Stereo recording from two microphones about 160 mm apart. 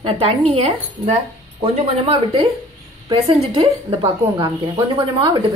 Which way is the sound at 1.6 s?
35° right (ahead or behind).